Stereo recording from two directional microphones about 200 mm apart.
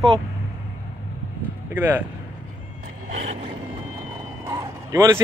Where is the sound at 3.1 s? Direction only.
35° right (ahead or behind).